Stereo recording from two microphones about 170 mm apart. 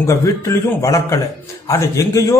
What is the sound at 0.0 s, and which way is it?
Speech, 15° left (ahead or behind).